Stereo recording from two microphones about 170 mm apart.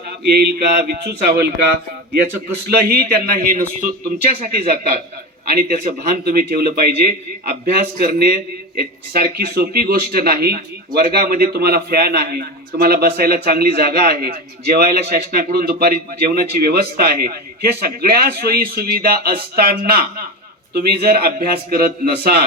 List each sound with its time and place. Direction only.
0.3 s speech: 70° right (ahead or behind)
2.9 s a man's voice: 60° right (ahead or behind)